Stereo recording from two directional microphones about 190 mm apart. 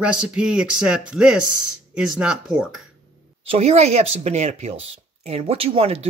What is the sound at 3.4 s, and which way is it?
Speech, 35° right (ahead or behind).